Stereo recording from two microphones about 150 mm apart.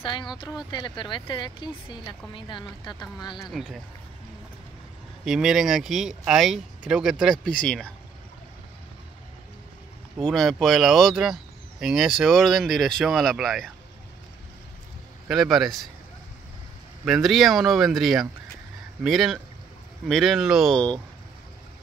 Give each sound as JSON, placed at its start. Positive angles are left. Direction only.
{"t": 0.0, "sound": "speech", "side_deg": 30}
{"t": 3.4, "sound": "speech", "side_deg": 0}
{"t": 5.2, "sound": "speech", "side_deg": -5}
{"t": 10.2, "sound": "speech", "side_deg": 0}
{"t": 15.2, "sound": "speech", "side_deg": 0}
{"t": 17.0, "sound": "speech", "side_deg": 0}